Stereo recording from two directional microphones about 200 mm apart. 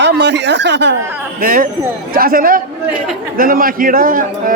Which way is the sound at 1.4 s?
45° right (ahead or behind).